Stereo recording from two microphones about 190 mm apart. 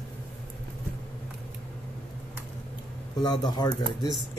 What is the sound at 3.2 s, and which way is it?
Speech, 20° left (ahead or behind).